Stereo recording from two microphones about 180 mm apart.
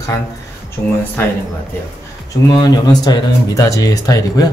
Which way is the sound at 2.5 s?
25° left (ahead or behind).